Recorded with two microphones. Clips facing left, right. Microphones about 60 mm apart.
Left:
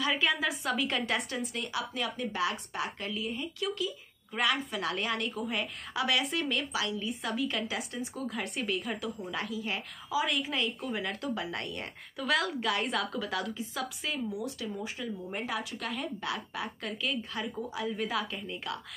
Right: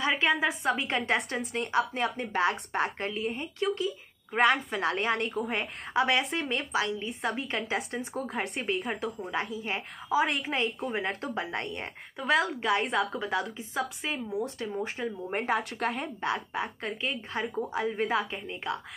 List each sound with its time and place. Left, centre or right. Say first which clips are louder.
0.4 s a woman's voice: right 3 dB; right
7.7 s a woman's voice: right 4 dB; right
10.0 s a woman's voice: right 4 dB; right